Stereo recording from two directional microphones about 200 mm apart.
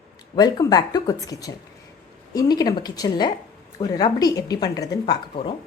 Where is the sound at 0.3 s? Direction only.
20° left (ahead or behind).